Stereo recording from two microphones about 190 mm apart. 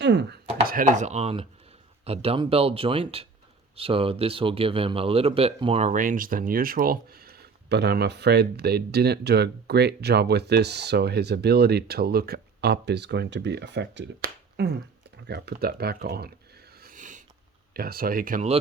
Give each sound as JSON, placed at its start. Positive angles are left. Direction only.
{"t": 0.0, "sound": "speech", "side_deg": -65}
{"t": 0.7, "sound": "speech", "side_deg": -45}
{"t": 16.8, "sound": "a sound", "side_deg": -45}
{"t": 17.7, "sound": "speech", "side_deg": -50}